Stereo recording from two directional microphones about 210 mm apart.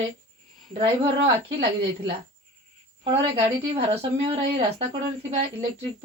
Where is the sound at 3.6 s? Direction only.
25° right (ahead or behind).